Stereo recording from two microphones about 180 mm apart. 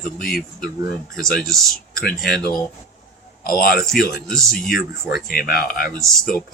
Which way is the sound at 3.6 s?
55° left (ahead or behind).